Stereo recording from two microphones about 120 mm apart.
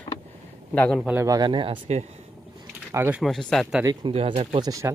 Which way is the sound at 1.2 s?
35° right (ahead or behind).